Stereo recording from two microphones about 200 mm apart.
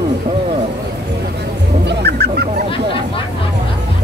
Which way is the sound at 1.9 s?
55° right (ahead or behind).